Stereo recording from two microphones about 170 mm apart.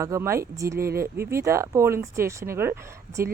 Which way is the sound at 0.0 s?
15° right (ahead or behind).